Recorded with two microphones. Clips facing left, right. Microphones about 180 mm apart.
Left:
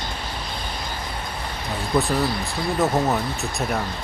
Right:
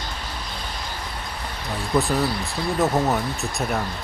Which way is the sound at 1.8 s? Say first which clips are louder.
Even; centre (ahead or behind).